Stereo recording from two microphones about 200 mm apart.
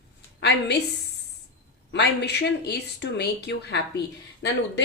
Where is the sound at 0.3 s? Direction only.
55° left (ahead or behind).